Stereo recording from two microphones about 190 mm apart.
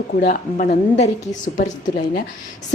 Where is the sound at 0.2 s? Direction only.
45° left (ahead or behind).